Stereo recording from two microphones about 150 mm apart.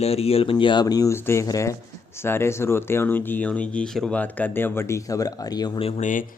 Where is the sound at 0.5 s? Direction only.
30° left (ahead or behind).